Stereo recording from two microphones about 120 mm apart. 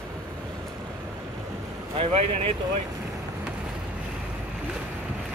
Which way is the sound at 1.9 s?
55° right (ahead or behind).